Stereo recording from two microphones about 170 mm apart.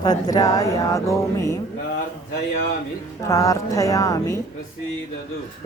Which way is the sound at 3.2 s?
20° left (ahead or behind).